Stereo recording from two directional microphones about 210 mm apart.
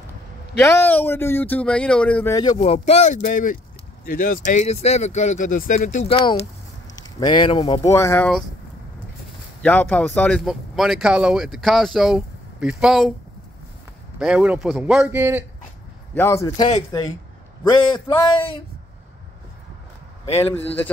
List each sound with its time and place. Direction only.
0.6 s speech: 10° left (ahead or behind)
2.5 s speech: 30° left (ahead or behind)
7.0 s speech: 20° left (ahead or behind)
9.6 s speech: 5° left (ahead or behind)
14.1 s speech: 5° right (ahead or behind)
16.2 s speech: 15° left (ahead or behind)
17.9 s speech: 20° left (ahead or behind)
20.2 s speech: 30° left (ahead or behind)